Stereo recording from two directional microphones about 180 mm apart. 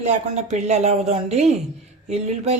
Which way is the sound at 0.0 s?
40° right (ahead or behind).